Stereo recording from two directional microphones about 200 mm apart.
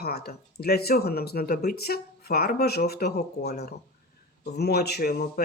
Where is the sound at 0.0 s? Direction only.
50° left (ahead or behind).